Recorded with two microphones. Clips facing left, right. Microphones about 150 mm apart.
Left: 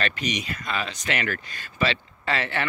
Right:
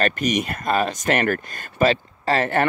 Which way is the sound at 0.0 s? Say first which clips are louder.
Right 7 dB; 50° right (ahead or behind).